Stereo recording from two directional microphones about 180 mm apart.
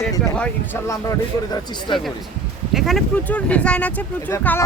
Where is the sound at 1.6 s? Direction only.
25° left (ahead or behind).